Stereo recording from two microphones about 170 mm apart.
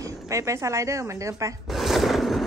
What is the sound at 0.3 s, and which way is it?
A woman's voice, 20° right (ahead or behind).